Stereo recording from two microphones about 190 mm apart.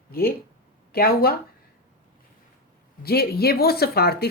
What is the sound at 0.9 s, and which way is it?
Speech, 55° left (ahead or behind).